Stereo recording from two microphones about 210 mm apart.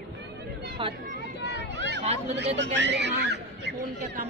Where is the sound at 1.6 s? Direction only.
55° right (ahead or behind).